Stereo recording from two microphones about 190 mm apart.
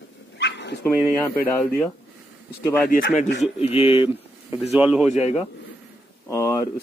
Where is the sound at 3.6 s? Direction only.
30° left (ahead or behind).